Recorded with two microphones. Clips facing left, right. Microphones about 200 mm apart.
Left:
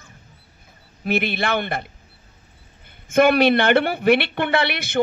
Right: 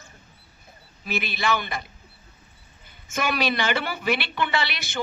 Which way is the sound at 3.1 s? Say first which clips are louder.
Left 11 dB; 60° left (ahead or behind).